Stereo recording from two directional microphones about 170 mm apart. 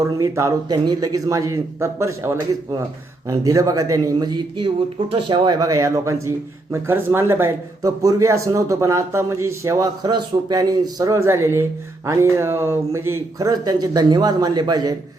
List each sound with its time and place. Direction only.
0.0 s a man's voice: 20° right (ahead or behind)